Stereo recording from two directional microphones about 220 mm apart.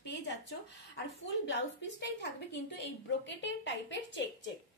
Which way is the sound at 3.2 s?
55° left (ahead or behind).